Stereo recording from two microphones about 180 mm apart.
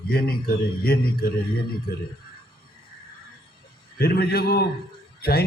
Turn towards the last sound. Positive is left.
turn(degrees=60)  # may be behind; listen again after turning